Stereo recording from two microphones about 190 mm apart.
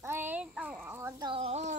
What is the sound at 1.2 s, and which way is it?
Speech, 30° right (ahead or behind).